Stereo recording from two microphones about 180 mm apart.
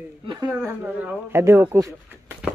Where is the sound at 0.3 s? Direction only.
20° right (ahead or behind).